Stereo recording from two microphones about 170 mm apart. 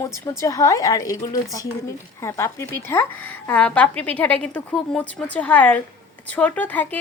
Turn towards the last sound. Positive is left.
turn(degrees=10)  # may be behind; listen again after turning